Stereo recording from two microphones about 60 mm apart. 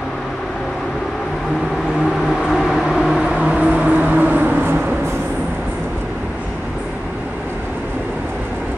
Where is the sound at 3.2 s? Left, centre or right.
Centre; by 4.9 s right.